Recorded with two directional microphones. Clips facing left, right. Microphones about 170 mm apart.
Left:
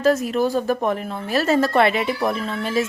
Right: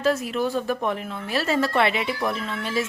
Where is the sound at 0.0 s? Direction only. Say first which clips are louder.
Left 5 dB; 45° left (ahead or behind).